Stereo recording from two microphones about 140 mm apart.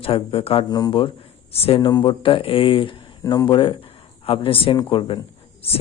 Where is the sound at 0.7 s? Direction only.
30° left (ahead or behind).